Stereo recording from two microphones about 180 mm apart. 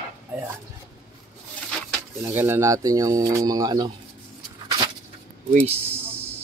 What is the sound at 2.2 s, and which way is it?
Speech, 10° right (ahead or behind).